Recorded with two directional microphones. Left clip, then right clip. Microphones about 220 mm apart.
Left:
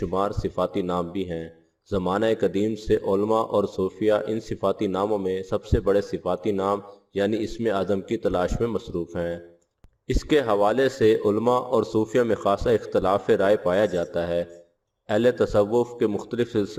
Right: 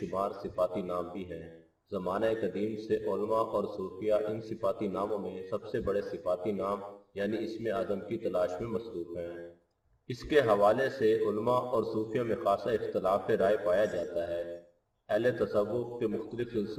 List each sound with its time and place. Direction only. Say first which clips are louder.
0.1 s speech: left 6 dB; 50° left (ahead or behind)